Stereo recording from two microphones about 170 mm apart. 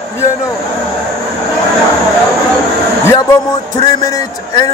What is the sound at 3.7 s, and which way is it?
Speech, 25° left (ahead or behind).